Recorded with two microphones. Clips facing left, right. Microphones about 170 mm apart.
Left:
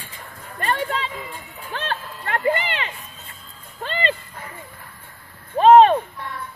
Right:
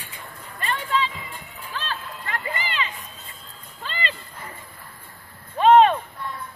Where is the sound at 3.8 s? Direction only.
55° left (ahead or behind).